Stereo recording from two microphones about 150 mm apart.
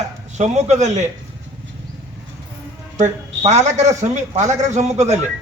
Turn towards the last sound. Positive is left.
turn(degrees=-50)  # may be behind; listen again after turning